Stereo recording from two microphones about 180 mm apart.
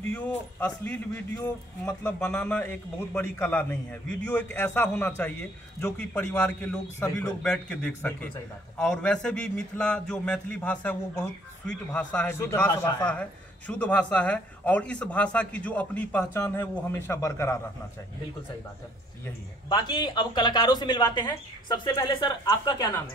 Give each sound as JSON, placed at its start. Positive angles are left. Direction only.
{"t": 0.1, "sound": "a man's voice", "side_deg": 10}
{"t": 19.7, "sound": "speech", "side_deg": 25}